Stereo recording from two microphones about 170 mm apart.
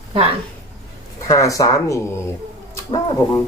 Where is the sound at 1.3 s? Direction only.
20° left (ahead or behind).